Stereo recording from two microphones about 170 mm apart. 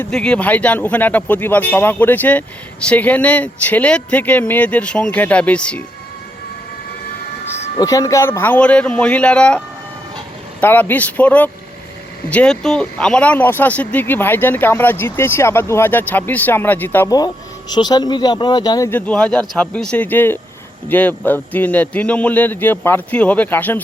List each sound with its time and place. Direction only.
0.0 s speech: 5° left (ahead or behind)
7.8 s speech: 20° left (ahead or behind)
17.1 s speech: 25° left (ahead or behind)